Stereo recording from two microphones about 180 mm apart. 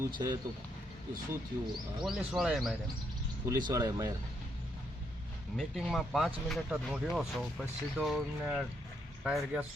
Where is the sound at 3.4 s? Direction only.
20° right (ahead or behind).